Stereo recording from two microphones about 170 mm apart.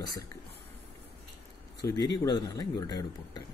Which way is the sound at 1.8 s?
20° left (ahead or behind).